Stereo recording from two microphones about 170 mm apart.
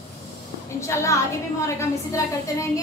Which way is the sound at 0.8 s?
15° left (ahead or behind).